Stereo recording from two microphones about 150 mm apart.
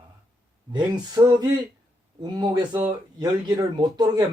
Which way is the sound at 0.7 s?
30° right (ahead or behind).